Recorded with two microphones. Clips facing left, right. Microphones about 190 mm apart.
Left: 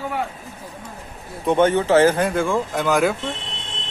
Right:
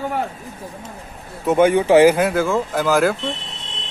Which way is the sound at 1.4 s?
10° right (ahead or behind).